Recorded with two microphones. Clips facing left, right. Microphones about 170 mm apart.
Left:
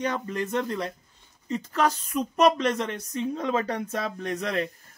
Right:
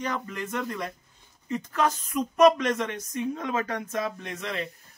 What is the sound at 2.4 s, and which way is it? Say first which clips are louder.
Speech: right 2 dB; 30° left (ahead or behind).